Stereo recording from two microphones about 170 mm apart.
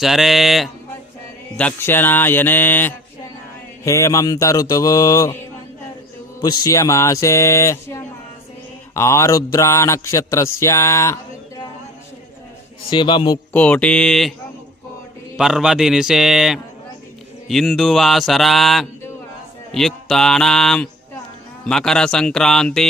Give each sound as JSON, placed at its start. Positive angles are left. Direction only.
{"t": 0.0, "sound": "mantra", "side_deg": 0}
{"t": 1.5, "sound": "mantra", "side_deg": 10}
{"t": 3.8, "sound": "speech", "side_deg": 15}
{"t": 6.4, "sound": "mantra", "side_deg": 20}
{"t": 12.9, "sound": "speech", "side_deg": 30}
{"t": 13.5, "sound": "mantra", "side_deg": 10}
{"t": 15.4, "sound": "mantra", "side_deg": -5}